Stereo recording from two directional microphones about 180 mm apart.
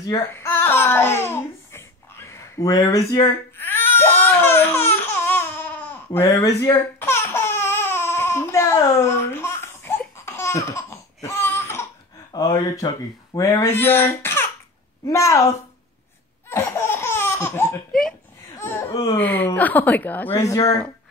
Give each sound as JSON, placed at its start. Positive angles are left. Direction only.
{"t": 0.0, "sound": "babbling", "side_deg": 20}
{"t": 6.1, "sound": "speech", "side_deg": 15}
{"t": 7.0, "sound": "laughter", "side_deg": 15}
{"t": 12.3, "sound": "speech", "side_deg": 20}
{"t": 16.4, "sound": "laughter", "side_deg": 15}
{"t": 18.6, "sound": "a sound", "side_deg": 15}
{"t": 18.9, "sound": "speech", "side_deg": 20}